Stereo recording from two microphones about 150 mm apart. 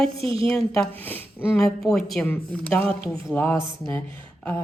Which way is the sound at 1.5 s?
5° left (ahead or behind).